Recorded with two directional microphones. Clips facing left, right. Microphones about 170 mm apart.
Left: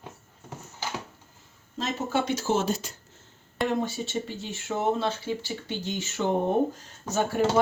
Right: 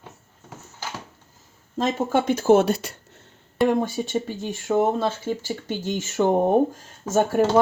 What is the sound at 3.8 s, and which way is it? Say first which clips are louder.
Speech: right 5 dB; 50° right (ahead or behind).